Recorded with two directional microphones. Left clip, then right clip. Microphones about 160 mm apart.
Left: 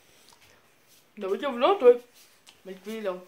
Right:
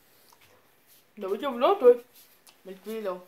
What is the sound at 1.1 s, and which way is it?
Speech, 5° right (ahead or behind).